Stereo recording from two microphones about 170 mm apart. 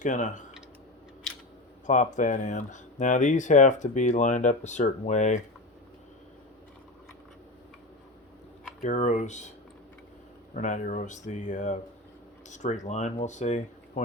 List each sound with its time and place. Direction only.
0.0 s speech: 50° left (ahead or behind)
1.9 s speech: 45° left (ahead or behind)
8.8 s speech: 45° left (ahead or behind)
10.5 s speech: 45° left (ahead or behind)